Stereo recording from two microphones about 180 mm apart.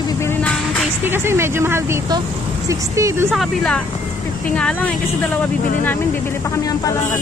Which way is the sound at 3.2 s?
5° left (ahead or behind).